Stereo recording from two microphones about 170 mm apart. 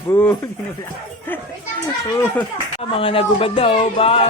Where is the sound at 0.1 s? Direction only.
15° left (ahead or behind).